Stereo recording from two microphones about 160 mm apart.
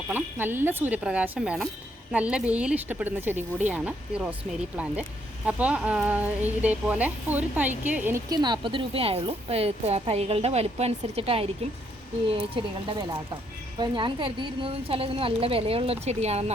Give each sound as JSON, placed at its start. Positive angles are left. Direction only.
{"t": 0.1, "sound": "speech", "side_deg": -10}
{"t": 5.5, "sound": "speech", "side_deg": -10}
{"t": 8.3, "sound": "a woman's voice", "side_deg": -25}
{"t": 12.6, "sound": "a woman's voice", "side_deg": -30}
{"t": 13.7, "sound": "a woman's voice", "side_deg": -30}